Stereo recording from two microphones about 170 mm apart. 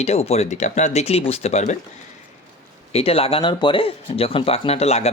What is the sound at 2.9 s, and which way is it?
Speech, 35° left (ahead or behind).